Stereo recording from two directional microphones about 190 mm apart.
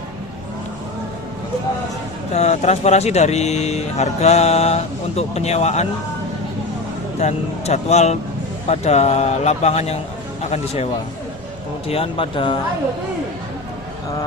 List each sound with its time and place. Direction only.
2.3 s speech: 35° left (ahead or behind)
7.2 s speech: 35° left (ahead or behind)
11.9 s speech: 30° left (ahead or behind)